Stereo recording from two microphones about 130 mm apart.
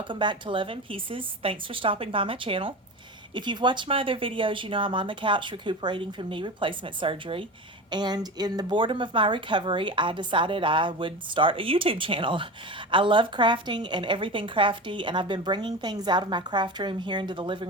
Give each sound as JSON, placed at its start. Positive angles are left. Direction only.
{"t": 0.1, "sound": "a woman's voice", "side_deg": -40}
{"t": 7.9, "sound": "a woman's voice", "side_deg": -35}